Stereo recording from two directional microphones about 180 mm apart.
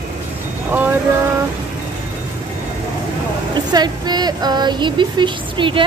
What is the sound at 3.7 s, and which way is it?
Speech, 25° right (ahead or behind).